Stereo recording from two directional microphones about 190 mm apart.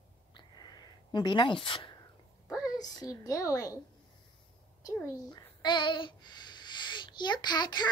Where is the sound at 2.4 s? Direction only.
5° right (ahead or behind).